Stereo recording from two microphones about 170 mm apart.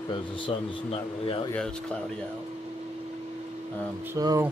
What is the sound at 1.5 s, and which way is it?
Speech, 5° left (ahead or behind).